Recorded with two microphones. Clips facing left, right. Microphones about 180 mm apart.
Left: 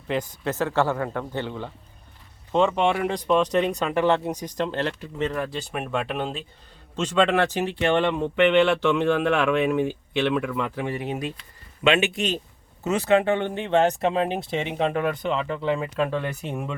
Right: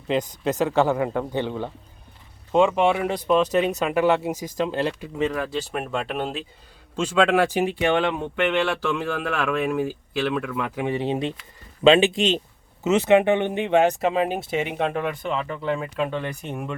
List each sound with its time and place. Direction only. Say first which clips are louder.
0.1 s speech: right 3 dB; 20° right (ahead or behind)
8.2 s speech: left 4 dB; centre (ahead or behind)
10.8 s speech: right 4 dB; 20° right (ahead or behind); by 16.7 s 5° left (ahead or behind)